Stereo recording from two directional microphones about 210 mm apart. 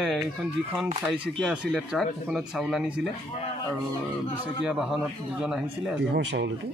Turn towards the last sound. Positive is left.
turn(degrees=-55)  # may be behind; listen again after turning